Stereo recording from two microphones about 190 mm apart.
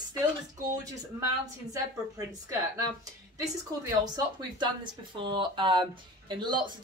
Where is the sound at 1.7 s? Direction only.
20° right (ahead or behind).